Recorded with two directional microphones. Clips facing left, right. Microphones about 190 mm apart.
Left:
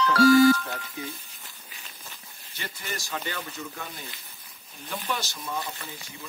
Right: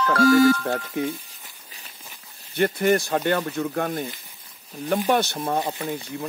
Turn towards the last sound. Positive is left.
turn(degrees=-60)  # may be behind; listen again after turning